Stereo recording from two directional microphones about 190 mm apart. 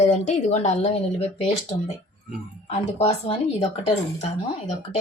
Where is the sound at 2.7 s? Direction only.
30° left (ahead or behind).